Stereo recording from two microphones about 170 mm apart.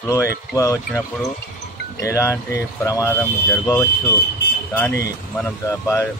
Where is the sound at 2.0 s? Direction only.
15° left (ahead or behind).